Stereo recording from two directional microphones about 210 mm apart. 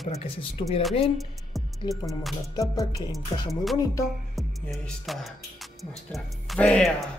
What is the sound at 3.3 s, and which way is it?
Speech, 15° left (ahead or behind).